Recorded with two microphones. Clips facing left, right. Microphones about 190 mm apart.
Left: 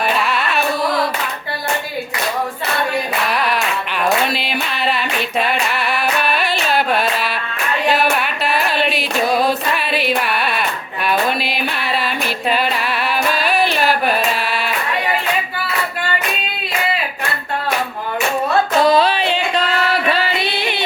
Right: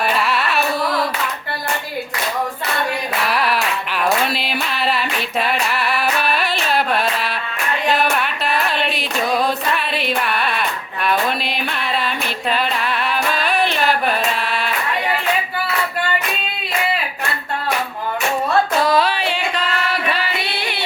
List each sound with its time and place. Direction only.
0.2 s carnatic music: centre (ahead or behind)
3.2 s a sound: 5° right (ahead or behind)
7.9 s singing: 5° left (ahead or behind)
13.3 s music: 5° left (ahead or behind)
18.8 s music: 25° left (ahead or behind)